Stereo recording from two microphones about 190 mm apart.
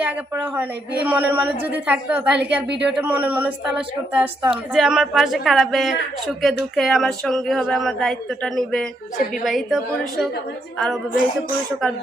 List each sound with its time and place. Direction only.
0.0 s a man's voice: 10° right (ahead or behind)
2.6 s speech: 65° right (ahead or behind)
3.0 s a woman's voice: 10° right (ahead or behind)